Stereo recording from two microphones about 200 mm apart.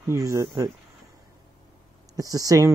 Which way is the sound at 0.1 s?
15° right (ahead or behind).